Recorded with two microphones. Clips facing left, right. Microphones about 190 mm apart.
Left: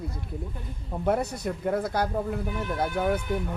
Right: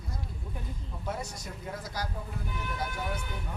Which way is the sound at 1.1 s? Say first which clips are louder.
Left 11 dB; 60° left (ahead or behind).